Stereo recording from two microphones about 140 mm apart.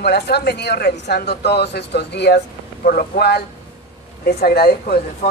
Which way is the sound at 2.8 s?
90° left.